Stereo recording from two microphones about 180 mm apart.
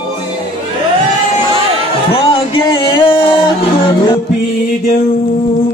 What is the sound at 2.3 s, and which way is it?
Music, 25° left (ahead or behind).